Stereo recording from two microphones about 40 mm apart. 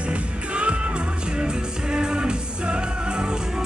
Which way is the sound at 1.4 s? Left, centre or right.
Centre.